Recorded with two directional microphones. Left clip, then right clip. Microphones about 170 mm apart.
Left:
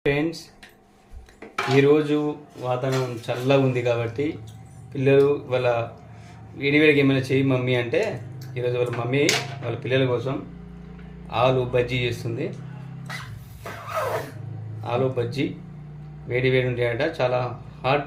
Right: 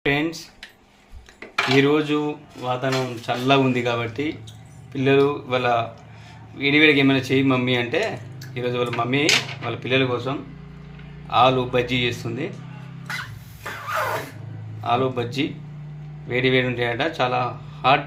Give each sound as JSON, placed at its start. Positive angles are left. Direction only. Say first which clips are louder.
{"t": 0.0, "sound": "speech", "louder": "right 1 dB", "side_deg": -5}
{"t": 1.7, "sound": "speech", "louder": "left 1 dB", "side_deg": -5}
{"t": 14.8, "sound": "speech", "louder": "right 3 dB", "side_deg": -5}